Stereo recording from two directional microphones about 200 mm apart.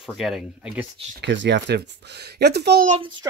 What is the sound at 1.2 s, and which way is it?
Speech, 60° right (ahead or behind).